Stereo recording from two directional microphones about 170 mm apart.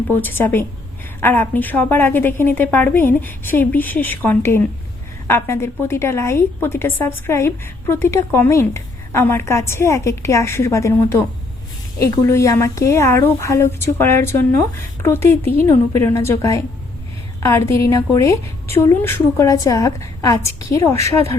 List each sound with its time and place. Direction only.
0.1 s a woman's voice: 10° left (ahead or behind)